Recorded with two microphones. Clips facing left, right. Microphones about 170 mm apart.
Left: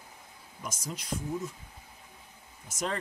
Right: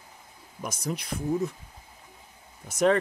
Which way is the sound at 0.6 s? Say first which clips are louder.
Right 6 dB; 65° right (ahead or behind).